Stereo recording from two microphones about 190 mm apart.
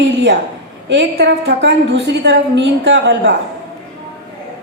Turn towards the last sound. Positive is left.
turn(degrees=-65)  # may be behind; listen again after turning